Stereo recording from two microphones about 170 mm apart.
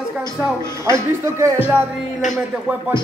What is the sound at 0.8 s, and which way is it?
Speech, 15° right (ahead or behind).